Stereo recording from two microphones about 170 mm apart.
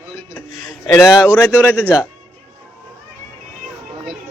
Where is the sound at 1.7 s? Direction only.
10° right (ahead or behind).